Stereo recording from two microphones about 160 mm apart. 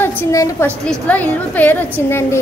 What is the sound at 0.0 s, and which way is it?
A woman's voice, 15° left (ahead or behind).